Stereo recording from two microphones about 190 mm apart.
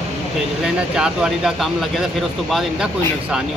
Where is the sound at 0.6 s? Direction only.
5° right (ahead or behind).